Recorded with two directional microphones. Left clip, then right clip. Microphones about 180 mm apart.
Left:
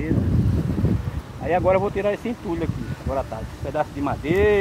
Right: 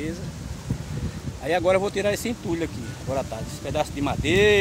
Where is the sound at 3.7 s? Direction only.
20° right (ahead or behind).